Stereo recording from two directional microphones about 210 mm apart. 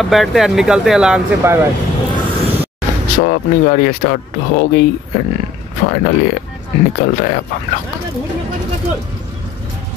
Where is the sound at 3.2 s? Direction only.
45° left (ahead or behind).